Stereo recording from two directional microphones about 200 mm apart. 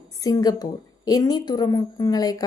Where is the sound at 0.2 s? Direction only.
20° left (ahead or behind).